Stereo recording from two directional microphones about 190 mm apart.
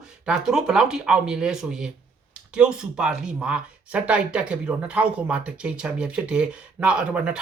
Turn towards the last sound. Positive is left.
turn(degrees=-5)  # may be behind; listen again after turning